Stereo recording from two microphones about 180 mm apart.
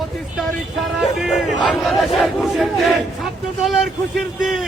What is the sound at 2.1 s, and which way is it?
Chant, centre (ahead or behind).